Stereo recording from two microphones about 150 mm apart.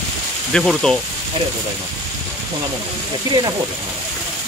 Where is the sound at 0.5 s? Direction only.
5° left (ahead or behind).